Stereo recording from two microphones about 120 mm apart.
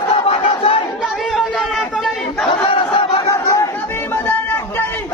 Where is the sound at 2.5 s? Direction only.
50° left (ahead or behind).